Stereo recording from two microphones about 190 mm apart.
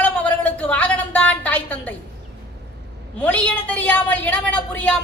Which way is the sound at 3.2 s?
5° left (ahead or behind).